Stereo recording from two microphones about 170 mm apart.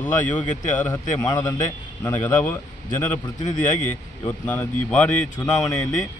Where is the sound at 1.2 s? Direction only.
25° left (ahead or behind).